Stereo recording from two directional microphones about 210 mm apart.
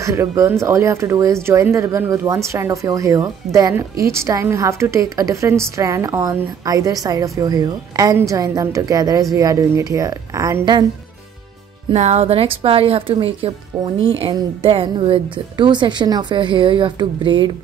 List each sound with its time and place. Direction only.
0.0 s a woman's voice: 15° right (ahead or behind)
11.9 s a woman's voice: 30° right (ahead or behind)